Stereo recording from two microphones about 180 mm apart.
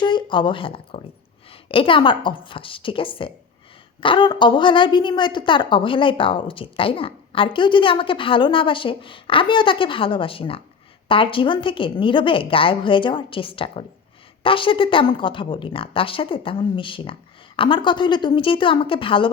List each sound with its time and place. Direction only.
0.0 s a woman's voice: 25° left (ahead or behind)